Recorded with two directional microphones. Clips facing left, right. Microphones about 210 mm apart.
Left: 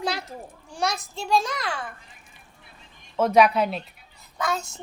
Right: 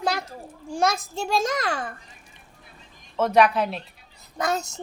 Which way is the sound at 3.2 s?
Centre (ahead or behind).